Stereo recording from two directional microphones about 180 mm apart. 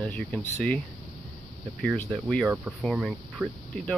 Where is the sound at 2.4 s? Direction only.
10° right (ahead or behind).